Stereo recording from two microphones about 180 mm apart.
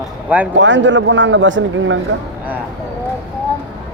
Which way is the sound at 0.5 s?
90° right.